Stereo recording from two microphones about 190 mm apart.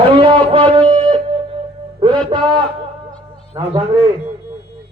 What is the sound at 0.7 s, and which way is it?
Music, 30° right (ahead or behind).